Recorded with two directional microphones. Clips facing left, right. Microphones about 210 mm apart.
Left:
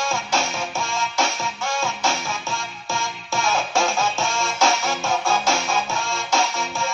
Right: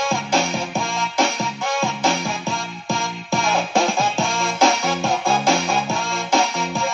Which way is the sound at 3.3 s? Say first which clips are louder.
Right 3 dB; 15° right (ahead or behind).